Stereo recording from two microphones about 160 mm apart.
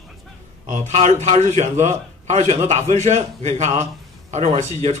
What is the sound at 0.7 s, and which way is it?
A man's voice, 45° right (ahead or behind).